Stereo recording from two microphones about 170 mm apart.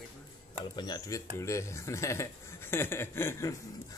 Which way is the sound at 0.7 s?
25° left (ahead or behind).